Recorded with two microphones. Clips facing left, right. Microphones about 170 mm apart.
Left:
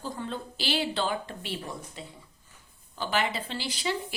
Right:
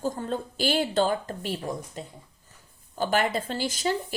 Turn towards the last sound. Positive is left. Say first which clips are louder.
# right 4 dB
turn(degrees=-45)  # may be behind; listen again after turning